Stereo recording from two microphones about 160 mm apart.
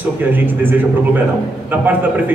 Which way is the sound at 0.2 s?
10° right (ahead or behind).